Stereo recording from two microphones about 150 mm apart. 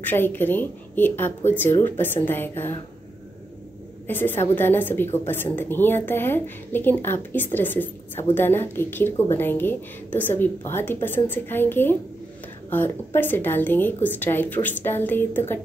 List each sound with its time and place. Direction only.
0.0 s a woman's voice: 15° left (ahead or behind)
4.1 s a woman's voice: 15° left (ahead or behind)